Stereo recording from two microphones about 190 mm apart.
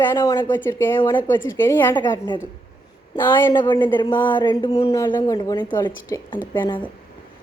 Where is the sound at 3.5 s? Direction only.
25° left (ahead or behind).